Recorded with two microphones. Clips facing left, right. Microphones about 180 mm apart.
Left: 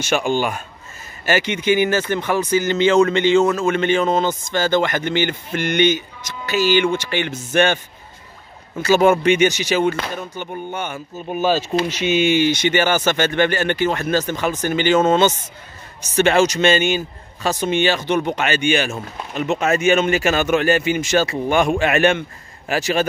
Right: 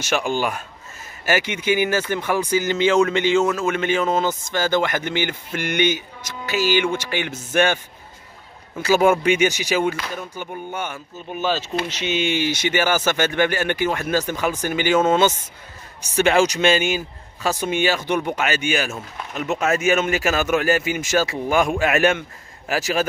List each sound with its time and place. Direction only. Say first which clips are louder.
0.0 s a man's voice: left 3 dB; centre (ahead or behind)
8.8 s speech: left 2 dB; 10° right (ahead or behind)
11.1 s speech: left 7 dB; 50° left (ahead or behind)
11.9 s speech: left 6 dB; 10° left (ahead or behind)
12.4 s a man's voice: left 4 dB; 5° right (ahead or behind)